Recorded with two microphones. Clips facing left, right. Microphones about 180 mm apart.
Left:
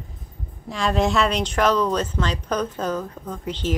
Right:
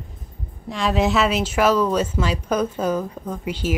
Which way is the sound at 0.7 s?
Centre (ahead or behind).